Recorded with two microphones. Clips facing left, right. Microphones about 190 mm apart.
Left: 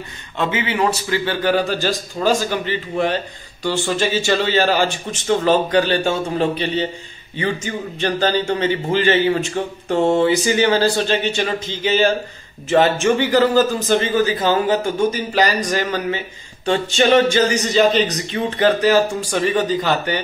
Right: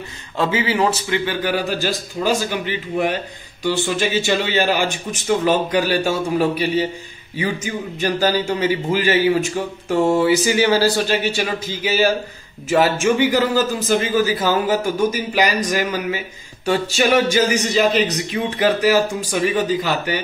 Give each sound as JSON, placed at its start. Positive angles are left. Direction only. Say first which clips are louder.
{"t": 0.4, "sound": "speech", "louder": "right 1 dB", "side_deg": -30}
{"t": 1.1, "sound": "a man's voice", "louder": "left 2 dB", "side_deg": -10}